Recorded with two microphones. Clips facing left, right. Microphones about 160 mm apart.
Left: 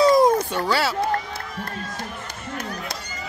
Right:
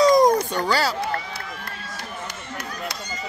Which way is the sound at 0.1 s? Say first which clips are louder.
Even; 5° left (ahead or behind).